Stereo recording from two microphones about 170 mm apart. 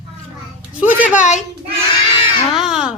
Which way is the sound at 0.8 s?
10° right (ahead or behind).